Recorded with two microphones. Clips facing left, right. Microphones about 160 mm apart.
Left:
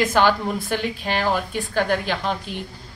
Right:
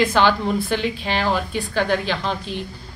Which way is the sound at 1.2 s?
10° left (ahead or behind).